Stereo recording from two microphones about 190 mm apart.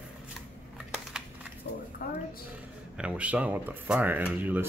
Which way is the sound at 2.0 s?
55° left (ahead or behind).